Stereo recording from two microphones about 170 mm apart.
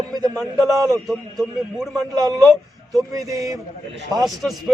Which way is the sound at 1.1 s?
Centre (ahead or behind).